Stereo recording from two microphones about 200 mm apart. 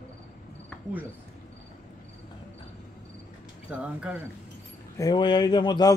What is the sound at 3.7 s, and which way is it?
Speech, 5° right (ahead or behind).